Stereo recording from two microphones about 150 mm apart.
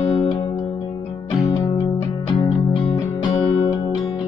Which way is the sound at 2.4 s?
35° left (ahead or behind).